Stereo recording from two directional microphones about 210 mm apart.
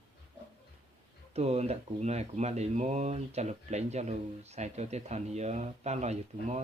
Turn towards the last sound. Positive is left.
turn(degrees=-30)  # may be behind; listen again after turning